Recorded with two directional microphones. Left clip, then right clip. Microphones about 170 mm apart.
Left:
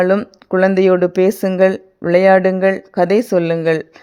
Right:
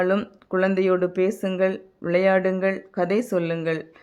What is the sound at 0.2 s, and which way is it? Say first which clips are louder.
Speech: left 8 dB; 40° left (ahead or behind).